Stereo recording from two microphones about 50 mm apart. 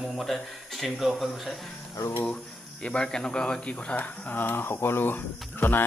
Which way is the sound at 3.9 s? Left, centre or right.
Left.